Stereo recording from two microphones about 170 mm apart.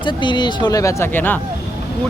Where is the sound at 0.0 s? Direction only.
25° left (ahead or behind).